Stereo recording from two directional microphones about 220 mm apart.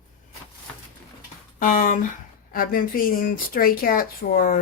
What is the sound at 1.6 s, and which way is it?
Speech, 40° left (ahead or behind).